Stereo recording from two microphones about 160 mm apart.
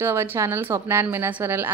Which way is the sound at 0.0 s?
15° right (ahead or behind).